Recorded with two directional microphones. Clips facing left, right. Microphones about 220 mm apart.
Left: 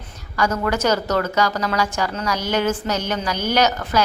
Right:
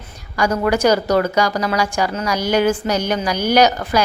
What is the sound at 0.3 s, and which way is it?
A woman's voice, 15° right (ahead or behind).